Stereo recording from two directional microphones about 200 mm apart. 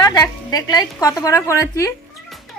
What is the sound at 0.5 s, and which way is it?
A woman's voice, 20° left (ahead or behind).